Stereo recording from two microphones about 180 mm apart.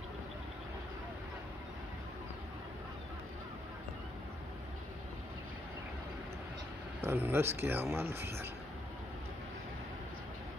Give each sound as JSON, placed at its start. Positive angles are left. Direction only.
{"t": 7.0, "sound": "speech", "side_deg": -10}